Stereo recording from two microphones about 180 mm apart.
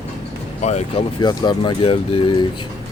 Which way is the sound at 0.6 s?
40° left (ahead or behind).